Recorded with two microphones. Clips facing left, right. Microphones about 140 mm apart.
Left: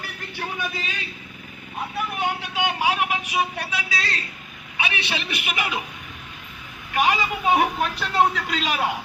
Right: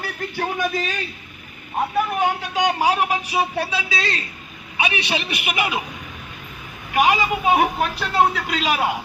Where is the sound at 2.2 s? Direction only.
40° right (ahead or behind); by 5.7 s 15° right (ahead or behind).